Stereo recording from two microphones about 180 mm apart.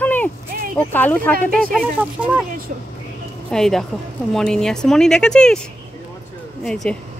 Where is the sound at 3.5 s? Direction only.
Centre (ahead or behind).